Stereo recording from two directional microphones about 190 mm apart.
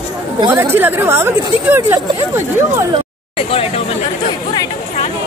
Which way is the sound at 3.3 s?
30° left (ahead or behind).